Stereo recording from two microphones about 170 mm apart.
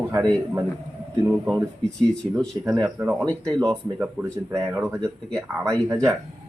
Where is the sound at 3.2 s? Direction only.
20° right (ahead or behind).